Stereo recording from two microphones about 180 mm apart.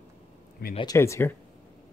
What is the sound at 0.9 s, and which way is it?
Speech, 15° left (ahead or behind).